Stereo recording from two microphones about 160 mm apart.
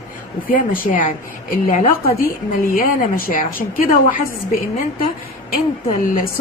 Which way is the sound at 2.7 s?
65° left (ahead or behind).